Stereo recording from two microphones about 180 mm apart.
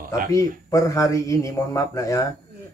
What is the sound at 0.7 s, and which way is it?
Speech, 20° left (ahead or behind).